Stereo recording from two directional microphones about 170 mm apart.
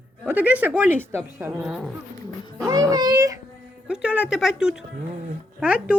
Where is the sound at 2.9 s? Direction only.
20° right (ahead or behind).